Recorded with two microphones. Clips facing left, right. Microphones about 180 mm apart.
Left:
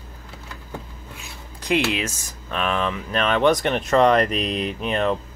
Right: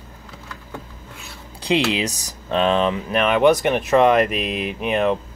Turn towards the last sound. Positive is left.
turn(degrees=-10)  # may be behind; listen again after turning